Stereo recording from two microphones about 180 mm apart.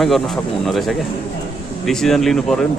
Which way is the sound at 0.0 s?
Centre (ahead or behind).